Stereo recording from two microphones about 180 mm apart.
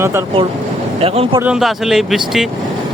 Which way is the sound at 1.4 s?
5° right (ahead or behind).